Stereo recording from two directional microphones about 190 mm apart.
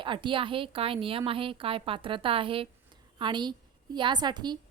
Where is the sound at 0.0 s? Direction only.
25° right (ahead or behind).